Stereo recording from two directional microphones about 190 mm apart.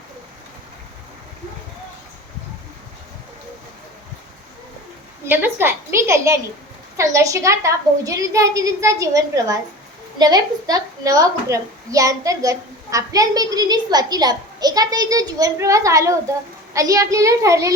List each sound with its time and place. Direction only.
5.2 s a woman's voice: 10° right (ahead or behind)